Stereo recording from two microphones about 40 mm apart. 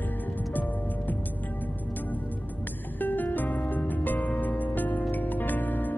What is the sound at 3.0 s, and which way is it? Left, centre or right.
Music, left.